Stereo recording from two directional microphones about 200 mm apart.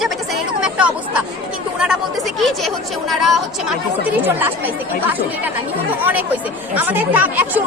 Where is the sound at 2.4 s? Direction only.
Centre (ahead or behind).